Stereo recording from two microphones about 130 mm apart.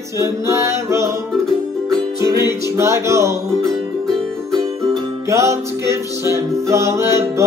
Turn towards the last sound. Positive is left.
turn(degrees=-20)  # may be behind; listen again after turning